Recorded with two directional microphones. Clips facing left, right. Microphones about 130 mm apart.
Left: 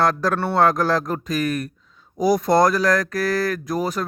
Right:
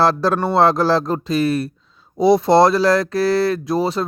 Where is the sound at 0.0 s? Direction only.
30° right (ahead or behind).